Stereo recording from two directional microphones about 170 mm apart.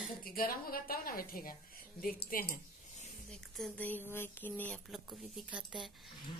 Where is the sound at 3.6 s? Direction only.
10° left (ahead or behind).